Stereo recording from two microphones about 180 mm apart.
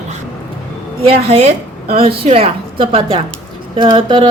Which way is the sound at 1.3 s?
35° right (ahead or behind).